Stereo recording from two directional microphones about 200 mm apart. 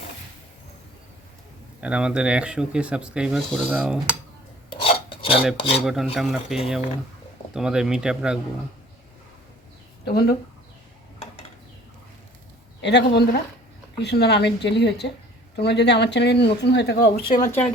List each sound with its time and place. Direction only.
1.8 s speech: 5° right (ahead or behind)
4.7 s filing: 25° left (ahead or behind)
5.5 s cutlery: 30° left (ahead or behind)
5.8 s speech: centre (ahead or behind)
10.1 s speech: 50° left (ahead or behind)
12.8 s speech: 60° left (ahead or behind)
17.3 s speech: 15° left (ahead or behind)